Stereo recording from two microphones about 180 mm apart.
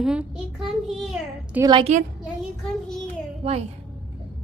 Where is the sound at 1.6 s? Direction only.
25° right (ahead or behind).